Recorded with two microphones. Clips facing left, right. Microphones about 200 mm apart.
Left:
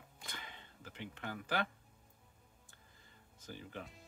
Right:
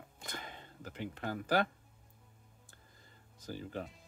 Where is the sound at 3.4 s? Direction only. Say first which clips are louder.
Right 6 dB; 40° right (ahead or behind).